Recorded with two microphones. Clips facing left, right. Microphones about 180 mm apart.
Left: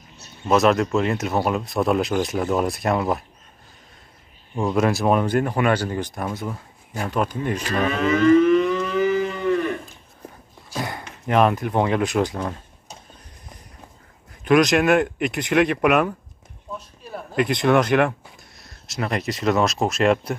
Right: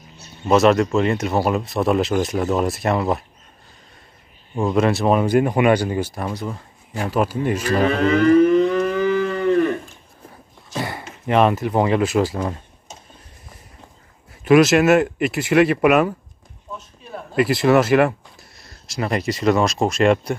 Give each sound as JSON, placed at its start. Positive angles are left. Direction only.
{"t": 0.5, "sound": "speech", "side_deg": 0}
{"t": 4.6, "sound": "speech", "side_deg": 0}
{"t": 5.2, "sound": "speech", "side_deg": -10}
{"t": 8.0, "sound": "civil defense siren", "side_deg": -30}
{"t": 9.0, "sound": "a sound", "side_deg": 25}
{"t": 10.7, "sound": "speech", "side_deg": 0}
{"t": 14.4, "sound": "speech", "side_deg": -5}
{"t": 17.1, "sound": "speech", "side_deg": -5}